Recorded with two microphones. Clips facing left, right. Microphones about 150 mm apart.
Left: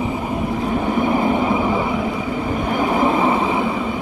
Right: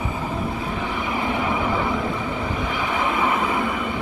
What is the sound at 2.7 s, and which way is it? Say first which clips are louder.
Train: left 9 dB; 40° left (ahead or behind).